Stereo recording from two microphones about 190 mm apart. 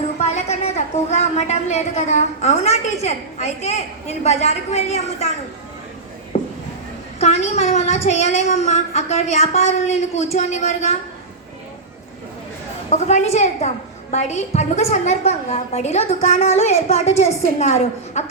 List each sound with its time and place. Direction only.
0.2 s a woman's voice: 35° left (ahead or behind)
6.3 s a sound: 30° left (ahead or behind)
7.2 s a woman's voice: 35° left (ahead or behind)
12.9 s a woman's voice: 35° left (ahead or behind)